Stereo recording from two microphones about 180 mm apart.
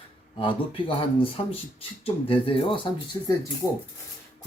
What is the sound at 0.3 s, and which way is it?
Speech, 30° left (ahead or behind).